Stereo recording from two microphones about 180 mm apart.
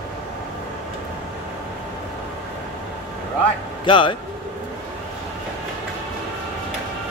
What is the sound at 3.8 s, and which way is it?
Speech, 25° left (ahead or behind).